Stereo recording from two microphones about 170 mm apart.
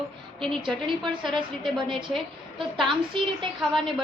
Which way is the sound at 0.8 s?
30° right (ahead or behind).